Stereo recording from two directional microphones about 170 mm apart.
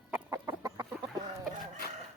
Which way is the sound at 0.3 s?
20° right (ahead or behind).